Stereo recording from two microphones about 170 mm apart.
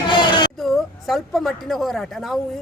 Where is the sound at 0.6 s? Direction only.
Centre (ahead or behind).